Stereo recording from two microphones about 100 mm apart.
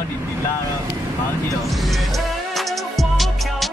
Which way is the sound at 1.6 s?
Centre (ahead or behind).